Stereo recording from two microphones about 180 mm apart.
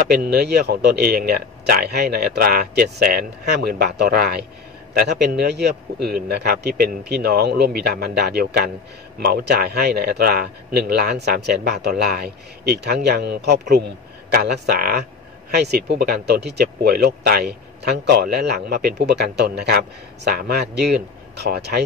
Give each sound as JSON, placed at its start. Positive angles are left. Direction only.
{"t": 0.1, "sound": "speech", "side_deg": -60}